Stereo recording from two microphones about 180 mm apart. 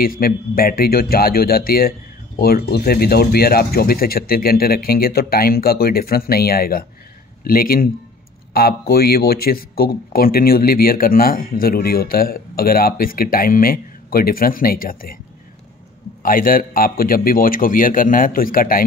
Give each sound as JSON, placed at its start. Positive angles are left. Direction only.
{"t": 0.0, "sound": "a man's voice", "side_deg": 55}
{"t": 16.2, "sound": "a man's voice", "side_deg": 50}